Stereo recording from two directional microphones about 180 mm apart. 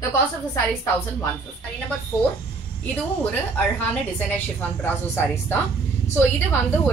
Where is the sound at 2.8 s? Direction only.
10° left (ahead or behind).